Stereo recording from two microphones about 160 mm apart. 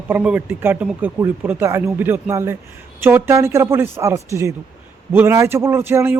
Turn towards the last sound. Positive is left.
turn(degrees=-15)  # may be behind; listen again after turning